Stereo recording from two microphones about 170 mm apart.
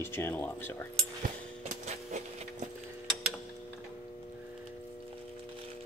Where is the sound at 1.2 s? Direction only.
45° right (ahead or behind).